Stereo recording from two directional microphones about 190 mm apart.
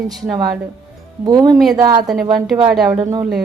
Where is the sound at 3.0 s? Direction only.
20° right (ahead or behind).